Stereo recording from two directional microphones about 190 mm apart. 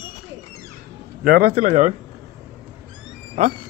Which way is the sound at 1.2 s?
50° right (ahead or behind).